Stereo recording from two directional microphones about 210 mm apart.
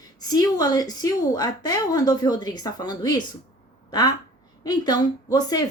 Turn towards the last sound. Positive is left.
turn(degrees=20)  # may be behind; listen again after turning